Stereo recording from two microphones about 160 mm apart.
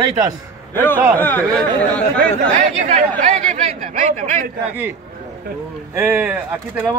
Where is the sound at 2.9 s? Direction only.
50° right (ahead or behind).